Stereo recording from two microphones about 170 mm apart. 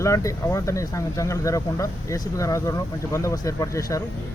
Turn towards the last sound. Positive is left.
turn(degrees=20)  # may be behind; listen again after turning